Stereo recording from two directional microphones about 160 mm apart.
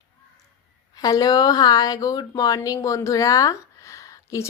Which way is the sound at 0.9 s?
25° left (ahead or behind).